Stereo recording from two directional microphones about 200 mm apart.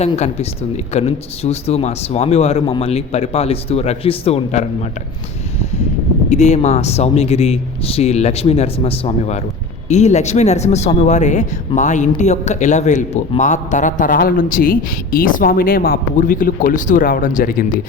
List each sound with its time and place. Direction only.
0.0 s speech: 30° left (ahead or behind)
6.3 s speech: 35° left (ahead or behind)